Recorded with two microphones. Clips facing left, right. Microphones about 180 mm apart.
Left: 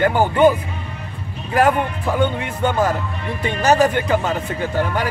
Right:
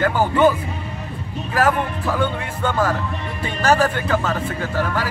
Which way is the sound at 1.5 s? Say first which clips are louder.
Left 3 dB; 20° left (ahead or behind).